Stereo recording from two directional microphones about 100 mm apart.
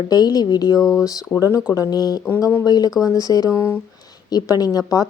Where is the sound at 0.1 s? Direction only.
40° left (ahead or behind).